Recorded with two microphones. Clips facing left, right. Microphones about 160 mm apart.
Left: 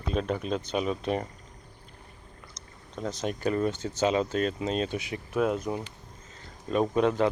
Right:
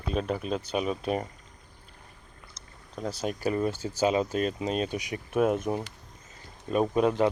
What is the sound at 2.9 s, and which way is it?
Speech, 5° right (ahead or behind).